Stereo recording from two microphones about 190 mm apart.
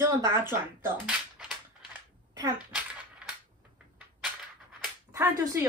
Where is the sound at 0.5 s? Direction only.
10° right (ahead or behind).